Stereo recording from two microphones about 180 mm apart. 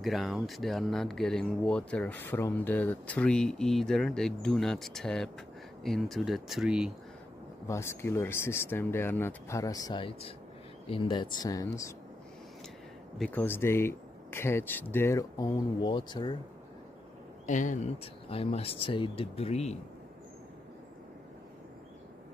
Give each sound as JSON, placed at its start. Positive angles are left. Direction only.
{"t": 0.0, "sound": "speech", "side_deg": 0}
{"t": 7.6, "sound": "speech", "side_deg": 15}
{"t": 13.2, "sound": "speech", "side_deg": 10}
{"t": 17.5, "sound": "speech", "side_deg": 45}